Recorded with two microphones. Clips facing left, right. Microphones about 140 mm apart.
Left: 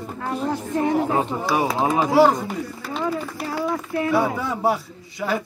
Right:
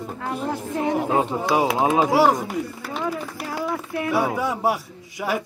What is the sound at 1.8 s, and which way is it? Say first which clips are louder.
Speech: left 3 dB; 15° right (ahead or behind).